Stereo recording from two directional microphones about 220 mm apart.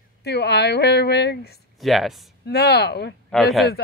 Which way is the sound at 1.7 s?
Centre (ahead or behind).